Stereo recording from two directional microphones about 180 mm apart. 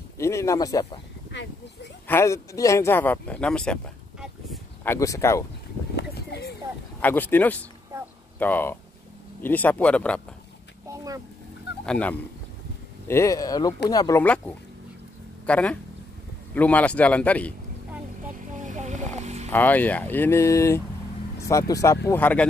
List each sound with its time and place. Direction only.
0.2 s speech: 15° left (ahead or behind)
1.3 s a sound: 75° left (ahead or behind)
2.0 s speech: 15° left (ahead or behind)
4.8 s speech: 15° left (ahead or behind)
5.9 s a sound: 65° left (ahead or behind)
7.0 s speech: 10° left (ahead or behind)
11.8 s speech: 5° left (ahead or behind)
13.1 s speech: 15° left (ahead or behind)
14.2 s speech: 5° left (ahead or behind)
18.5 s a sound: 45° right (ahead or behind)
19.1 s vehicle: 40° right (ahead or behind)
19.5 s speech: 10° left (ahead or behind)